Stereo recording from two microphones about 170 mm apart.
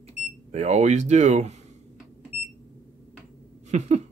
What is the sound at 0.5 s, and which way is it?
Speech, 40° right (ahead or behind).